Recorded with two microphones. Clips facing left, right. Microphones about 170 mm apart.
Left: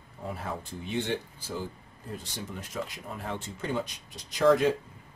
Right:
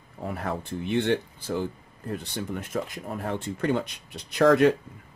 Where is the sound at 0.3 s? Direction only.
65° right (ahead or behind).